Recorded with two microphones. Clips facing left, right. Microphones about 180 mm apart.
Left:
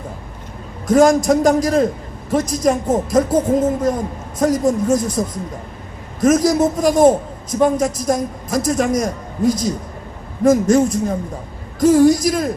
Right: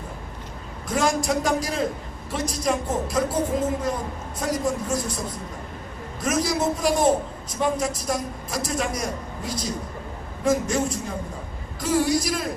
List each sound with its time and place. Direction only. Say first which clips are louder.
0.9 s a man's voice: left 11 dB; 45° left (ahead or behind)